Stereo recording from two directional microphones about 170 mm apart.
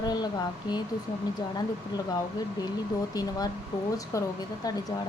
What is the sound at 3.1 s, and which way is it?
Speech, 20° left (ahead or behind).